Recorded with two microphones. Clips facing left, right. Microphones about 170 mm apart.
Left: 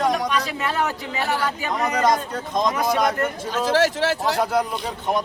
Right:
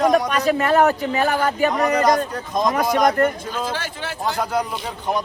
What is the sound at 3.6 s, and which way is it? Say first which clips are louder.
Speech: left 9 dB; 80° left.